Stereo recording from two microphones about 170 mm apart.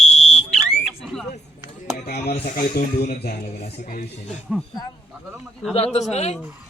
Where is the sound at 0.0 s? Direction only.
40° left (ahead or behind).